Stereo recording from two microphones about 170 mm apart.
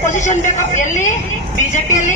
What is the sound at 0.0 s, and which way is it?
A woman's voice, 45° left (ahead or behind).